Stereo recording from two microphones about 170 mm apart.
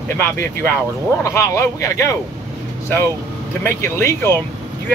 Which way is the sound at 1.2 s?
15° left (ahead or behind).